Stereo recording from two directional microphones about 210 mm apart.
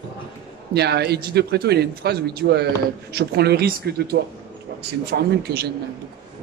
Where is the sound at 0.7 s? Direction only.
50° right (ahead or behind).